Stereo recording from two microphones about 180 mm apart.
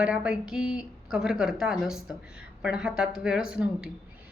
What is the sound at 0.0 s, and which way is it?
A woman's voice, 5° right (ahead or behind).